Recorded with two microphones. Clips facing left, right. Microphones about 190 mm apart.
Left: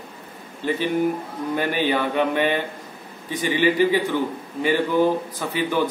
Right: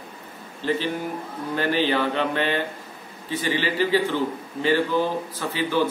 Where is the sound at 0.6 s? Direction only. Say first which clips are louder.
Left 4 dB; 15° left (ahead or behind).